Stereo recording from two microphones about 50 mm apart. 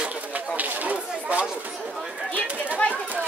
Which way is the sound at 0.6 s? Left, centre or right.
Right.